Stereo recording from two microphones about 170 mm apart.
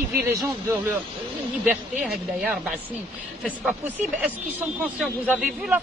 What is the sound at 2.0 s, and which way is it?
Speech, centre (ahead or behind).